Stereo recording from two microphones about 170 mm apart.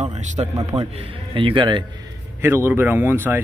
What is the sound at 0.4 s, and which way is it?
Speech, 35° right (ahead or behind).